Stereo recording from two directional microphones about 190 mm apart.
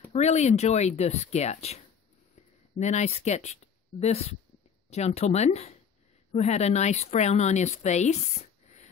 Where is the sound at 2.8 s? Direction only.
35° left (ahead or behind).